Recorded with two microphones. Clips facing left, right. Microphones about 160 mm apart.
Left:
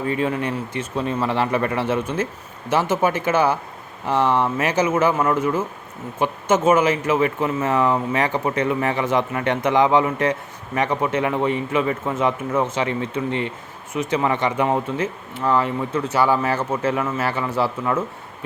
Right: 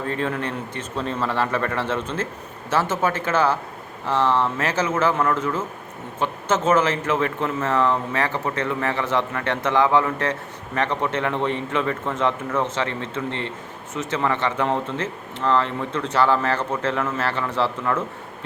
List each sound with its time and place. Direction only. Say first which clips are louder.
0.0 s speech: left 3 dB; 10° left (ahead or behind)